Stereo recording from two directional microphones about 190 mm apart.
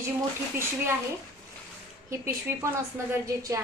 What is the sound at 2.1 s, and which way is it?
A woman's voice, 15° right (ahead or behind).